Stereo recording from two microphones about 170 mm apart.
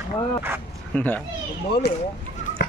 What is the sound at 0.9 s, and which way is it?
Speech, 10° left (ahead or behind).